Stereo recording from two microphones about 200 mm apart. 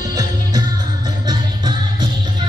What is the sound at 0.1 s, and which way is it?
Music, 20° right (ahead or behind).